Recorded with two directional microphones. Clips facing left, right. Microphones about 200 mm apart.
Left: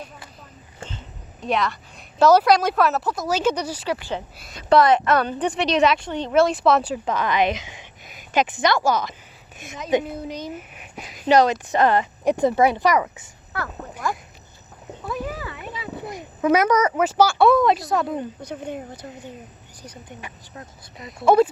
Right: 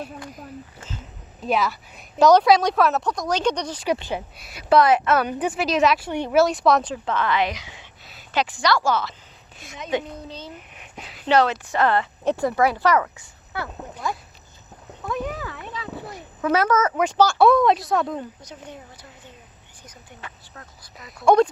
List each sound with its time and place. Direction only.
0.9 s a woman's voice: 5° right (ahead or behind)
3.8 s speech: 20° right (ahead or behind)
4.4 s a woman's voice: 5° right (ahead or behind); by 13.2 s 15° left (ahead or behind)
15.0 s a child's voice: 5° left (ahead or behind)
18.4 s a woman's voice: 55° left (ahead or behind)
20.1 s speech: 20° left (ahead or behind)
21.2 s a woman's voice: 5° left (ahead or behind)